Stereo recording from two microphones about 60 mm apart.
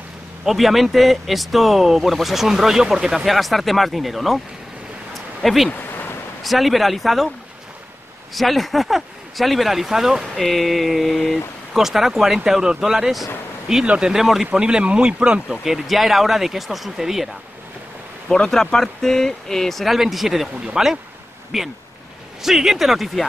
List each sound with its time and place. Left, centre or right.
0.5 s speech: centre
5.4 s speech: centre
5.7 s a sound: left
6.4 s speech: centre
8.4 s speech: centre
15.6 s speech: centre
18.3 s speech: centre